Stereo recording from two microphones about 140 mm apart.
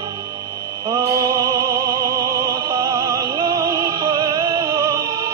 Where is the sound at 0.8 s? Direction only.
25° right (ahead or behind).